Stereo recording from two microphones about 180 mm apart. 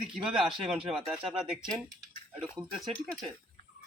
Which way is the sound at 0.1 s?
5° right (ahead or behind).